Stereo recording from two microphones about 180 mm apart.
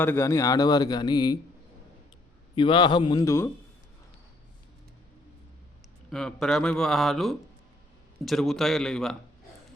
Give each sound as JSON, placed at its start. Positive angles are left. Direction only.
{"t": 0.0, "sound": "a man's voice", "side_deg": 15}
{"t": 2.6, "sound": "a man's voice", "side_deg": 25}
{"t": 6.1, "sound": "speech", "side_deg": 5}